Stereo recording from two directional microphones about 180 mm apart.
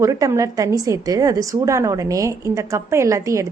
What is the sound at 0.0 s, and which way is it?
A woman's voice, 20° right (ahead or behind).